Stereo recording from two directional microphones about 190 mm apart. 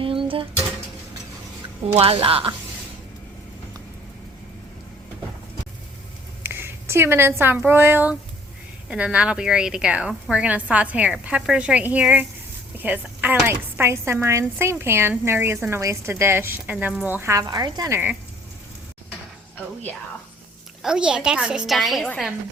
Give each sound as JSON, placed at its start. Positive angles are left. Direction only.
{"t": 0.0, "sound": "music", "side_deg": -30}
{"t": 1.9, "sound": "a woman's voice", "side_deg": -30}
{"t": 6.4, "sound": "a woman's voice", "side_deg": -10}
{"t": 19.5, "sound": "speech", "side_deg": 10}
{"t": 20.8, "sound": "a woman's voice", "side_deg": -5}